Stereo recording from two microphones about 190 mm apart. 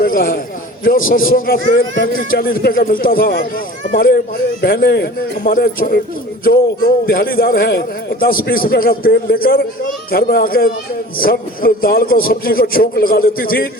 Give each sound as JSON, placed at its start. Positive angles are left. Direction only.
{"t": 0.0, "sound": "a man's voice", "side_deg": 50}